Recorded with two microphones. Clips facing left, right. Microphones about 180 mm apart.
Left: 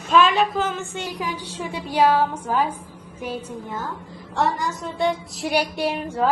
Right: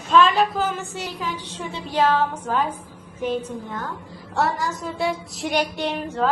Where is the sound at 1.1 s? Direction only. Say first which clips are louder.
Left 1 dB; 15° left (ahead or behind).